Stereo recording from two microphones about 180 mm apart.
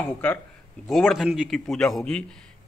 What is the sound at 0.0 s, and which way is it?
Speech, 10° left (ahead or behind).